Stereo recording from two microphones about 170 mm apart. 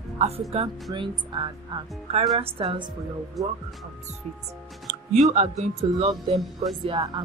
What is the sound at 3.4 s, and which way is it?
Speech, centre (ahead or behind).